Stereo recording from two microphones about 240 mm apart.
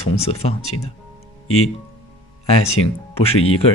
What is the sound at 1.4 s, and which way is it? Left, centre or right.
Speech, left.